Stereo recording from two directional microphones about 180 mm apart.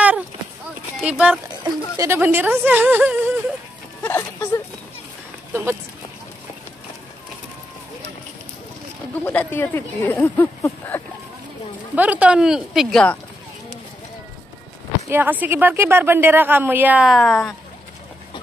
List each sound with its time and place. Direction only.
0.9 s speech: 5° right (ahead or behind)
4.0 s a sound: 15° left (ahead or behind)
5.5 s speech: 10° right (ahead or behind)
9.2 s speech: 10° left (ahead or behind)
11.9 s speech: 10° right (ahead or behind)
15.0 s speech: 10° right (ahead or behind)